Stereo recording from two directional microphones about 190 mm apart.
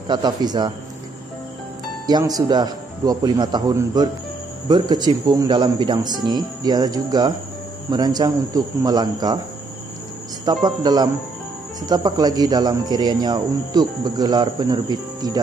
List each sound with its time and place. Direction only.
0.1 s speech: 20° right (ahead or behind)
2.0 s speech: 20° right (ahead or behind)
10.4 s speech: 20° right (ahead or behind)